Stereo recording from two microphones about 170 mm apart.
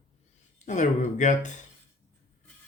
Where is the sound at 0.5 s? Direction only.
45° left (ahead or behind).